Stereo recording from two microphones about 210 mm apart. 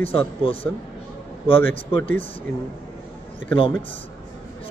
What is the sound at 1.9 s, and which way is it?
Speech, 10° left (ahead or behind).